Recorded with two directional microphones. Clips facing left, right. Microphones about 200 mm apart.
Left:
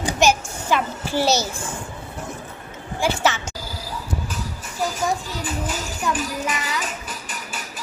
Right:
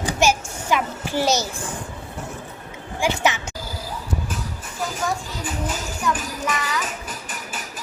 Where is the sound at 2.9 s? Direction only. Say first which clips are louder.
Even; 15° right (ahead or behind).